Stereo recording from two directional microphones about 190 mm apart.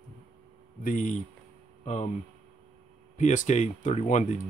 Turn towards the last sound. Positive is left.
turn(degrees=35)  # may be behind; listen again after turning